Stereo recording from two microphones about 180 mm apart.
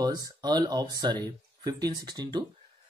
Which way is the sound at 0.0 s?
20° right (ahead or behind).